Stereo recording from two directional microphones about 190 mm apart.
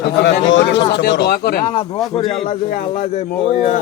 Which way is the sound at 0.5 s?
70° left (ahead or behind).